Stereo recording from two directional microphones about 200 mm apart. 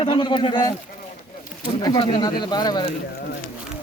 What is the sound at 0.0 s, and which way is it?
Speech, 25° left (ahead or behind).